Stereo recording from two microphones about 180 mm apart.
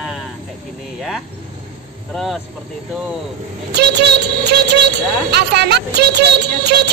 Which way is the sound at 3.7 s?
65° right (ahead or behind).